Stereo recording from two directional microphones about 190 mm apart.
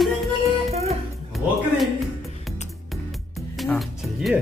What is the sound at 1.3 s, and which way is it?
Music, centre (ahead or behind).